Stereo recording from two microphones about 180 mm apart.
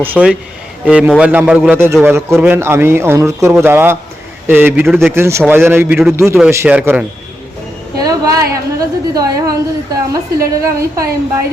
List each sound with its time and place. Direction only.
0.0 s a man's voice: 10° right (ahead or behind)
7.9 s a sound: 20° right (ahead or behind)
9.1 s a woman's voice: 20° right (ahead or behind)